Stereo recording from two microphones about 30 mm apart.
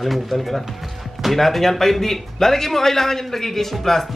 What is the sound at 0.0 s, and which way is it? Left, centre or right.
Speech, centre.